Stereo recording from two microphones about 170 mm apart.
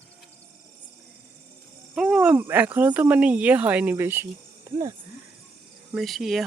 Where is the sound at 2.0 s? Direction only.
5° right (ahead or behind).